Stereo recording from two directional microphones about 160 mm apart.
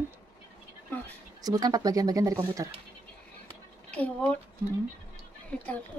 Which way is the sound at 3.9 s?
10° left (ahead or behind).